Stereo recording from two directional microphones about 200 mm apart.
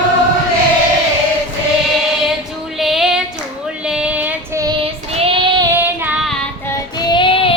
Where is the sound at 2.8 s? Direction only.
Centre (ahead or behind).